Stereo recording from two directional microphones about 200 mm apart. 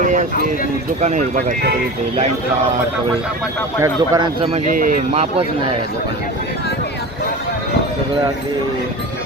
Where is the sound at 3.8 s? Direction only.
20° right (ahead or behind).